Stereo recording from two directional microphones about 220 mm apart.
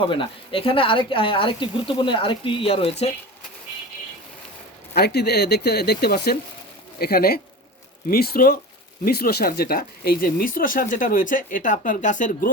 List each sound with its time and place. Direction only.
0.0 s speech: 25° left (ahead or behind)
4.9 s speech: 45° left (ahead or behind)